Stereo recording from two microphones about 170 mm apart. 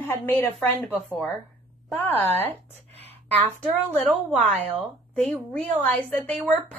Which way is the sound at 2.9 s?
35° right (ahead or behind).